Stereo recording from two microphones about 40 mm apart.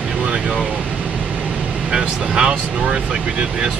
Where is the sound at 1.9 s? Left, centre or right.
Centre.